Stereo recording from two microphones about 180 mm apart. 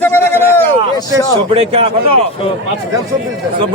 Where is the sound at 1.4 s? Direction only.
30° right (ahead or behind).